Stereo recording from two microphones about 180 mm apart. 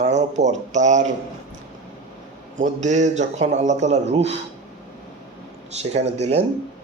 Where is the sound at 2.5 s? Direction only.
40° right (ahead or behind).